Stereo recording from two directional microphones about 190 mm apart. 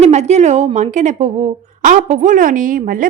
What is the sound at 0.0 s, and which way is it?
A woman's voice, 35° right (ahead or behind).